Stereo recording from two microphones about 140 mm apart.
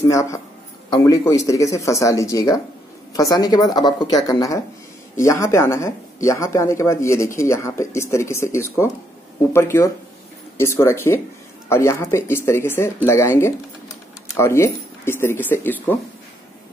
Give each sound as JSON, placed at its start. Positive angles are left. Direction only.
{"t": 0.0, "sound": "a man's voice", "side_deg": 25}